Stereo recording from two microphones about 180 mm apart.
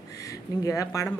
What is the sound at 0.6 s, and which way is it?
Speech, 20° left (ahead or behind).